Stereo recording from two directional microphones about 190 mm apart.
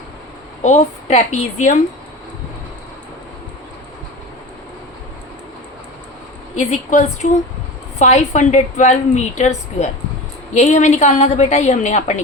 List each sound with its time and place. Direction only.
0.6 s a woman's voice: 35° left (ahead or behind)
6.6 s a woman's voice: 40° left (ahead or behind)